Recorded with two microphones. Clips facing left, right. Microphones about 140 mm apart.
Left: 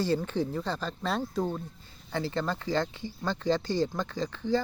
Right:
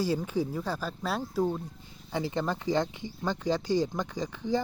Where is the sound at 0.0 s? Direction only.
10° right (ahead or behind).